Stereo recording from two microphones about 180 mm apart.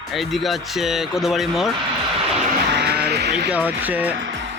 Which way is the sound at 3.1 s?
65° right (ahead or behind).